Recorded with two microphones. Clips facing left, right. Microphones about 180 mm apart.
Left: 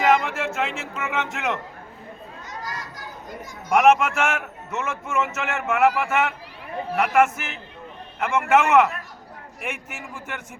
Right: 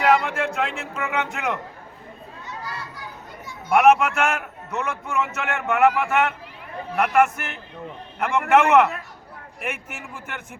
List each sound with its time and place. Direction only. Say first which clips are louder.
0.0 s speech: right 1 dB; centre (ahead or behind)
2.5 s children playing: even; 40° left (ahead or behind)
3.7 s a man's voice: right 1 dB; centre (ahead or behind)